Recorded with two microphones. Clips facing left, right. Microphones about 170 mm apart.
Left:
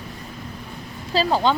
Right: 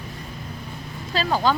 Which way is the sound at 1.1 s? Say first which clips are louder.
Left 2 dB; 30° left (ahead or behind).